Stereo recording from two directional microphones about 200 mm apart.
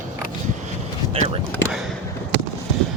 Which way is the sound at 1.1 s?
30° right (ahead or behind).